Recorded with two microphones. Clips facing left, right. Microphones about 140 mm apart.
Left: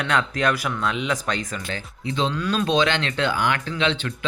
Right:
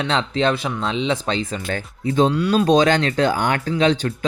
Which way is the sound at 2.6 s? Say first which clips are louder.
Right 5 dB; 45° right (ahead or behind).